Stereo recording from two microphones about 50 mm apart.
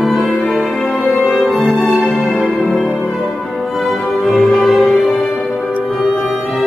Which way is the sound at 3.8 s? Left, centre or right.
Centre.